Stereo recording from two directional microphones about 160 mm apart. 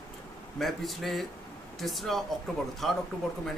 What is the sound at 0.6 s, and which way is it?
Speech, centre (ahead or behind).